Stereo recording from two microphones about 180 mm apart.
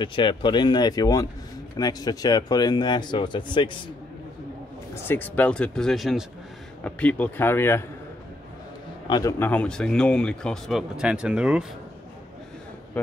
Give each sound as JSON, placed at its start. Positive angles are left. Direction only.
{"t": 0.0, "sound": "a man's voice", "side_deg": 25}
{"t": 4.9, "sound": "a man's voice", "side_deg": 10}
{"t": 9.0, "sound": "a man's voice", "side_deg": 25}
{"t": 9.4, "sound": "speech", "side_deg": 10}
{"t": 13.0, "sound": "a sound", "side_deg": 10}